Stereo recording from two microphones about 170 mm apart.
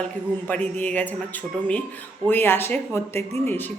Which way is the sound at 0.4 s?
10° left (ahead or behind).